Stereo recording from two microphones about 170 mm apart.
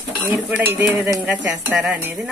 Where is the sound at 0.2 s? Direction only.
10° right (ahead or behind).